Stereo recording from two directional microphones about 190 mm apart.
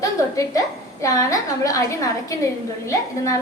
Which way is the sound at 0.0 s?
15° left (ahead or behind).